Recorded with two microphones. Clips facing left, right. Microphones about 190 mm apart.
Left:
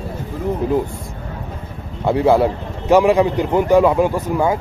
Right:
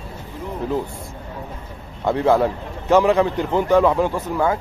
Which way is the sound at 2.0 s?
10° left (ahead or behind).